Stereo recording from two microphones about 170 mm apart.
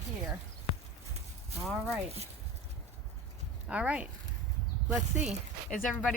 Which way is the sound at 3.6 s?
5° right (ahead or behind).